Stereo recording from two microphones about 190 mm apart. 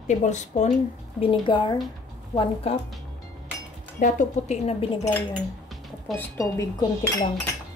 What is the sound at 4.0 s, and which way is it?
Speech, 40° left (ahead or behind).